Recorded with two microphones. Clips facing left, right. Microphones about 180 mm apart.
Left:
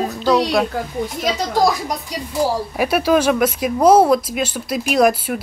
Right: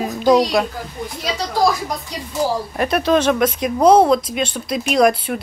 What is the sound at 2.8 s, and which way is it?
Speech, 5° left (ahead or behind).